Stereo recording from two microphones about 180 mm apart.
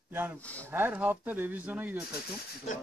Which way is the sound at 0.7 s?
10° right (ahead or behind).